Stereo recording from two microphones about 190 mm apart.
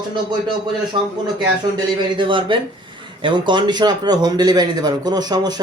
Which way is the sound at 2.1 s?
25° right (ahead or behind).